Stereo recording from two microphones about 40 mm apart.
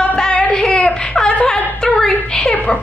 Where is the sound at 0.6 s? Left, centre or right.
Left.